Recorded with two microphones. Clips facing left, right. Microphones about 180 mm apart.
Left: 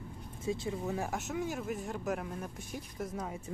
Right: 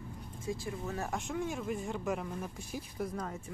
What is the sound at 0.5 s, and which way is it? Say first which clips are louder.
Speech: left 3 dB; 20° left (ahead or behind).